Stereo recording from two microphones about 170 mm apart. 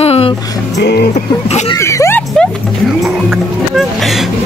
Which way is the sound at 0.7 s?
80° left.